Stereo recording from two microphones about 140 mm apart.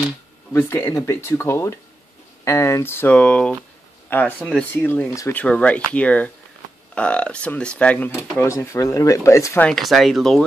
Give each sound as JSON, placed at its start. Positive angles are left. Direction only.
{"t": 0.5, "sound": "speech", "side_deg": 20}
{"t": 8.4, "sound": "speech", "side_deg": 20}
{"t": 9.7, "sound": "speech", "side_deg": 0}